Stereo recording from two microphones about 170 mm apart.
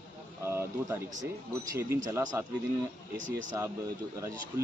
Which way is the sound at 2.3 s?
15° right (ahead or behind).